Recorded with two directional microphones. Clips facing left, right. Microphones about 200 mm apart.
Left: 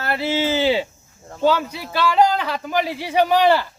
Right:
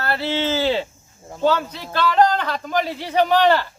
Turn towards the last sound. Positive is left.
turn(degrees=10)  # may be behind; listen again after turning